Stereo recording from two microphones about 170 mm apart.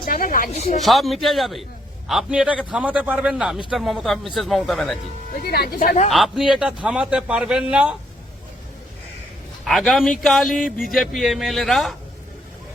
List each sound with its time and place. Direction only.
0.0 s a woman's voice: 60° left (ahead or behind)
0.5 s speech: 40° left (ahead or behind)
0.8 s a man's voice: centre (ahead or behind)
5.4 s speech: 65° left (ahead or behind)
6.1 s a man's voice: centre (ahead or behind)
9.6 s a man's voice: centre (ahead or behind)